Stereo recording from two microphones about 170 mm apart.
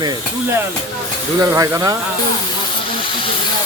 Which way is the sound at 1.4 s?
20° right (ahead or behind).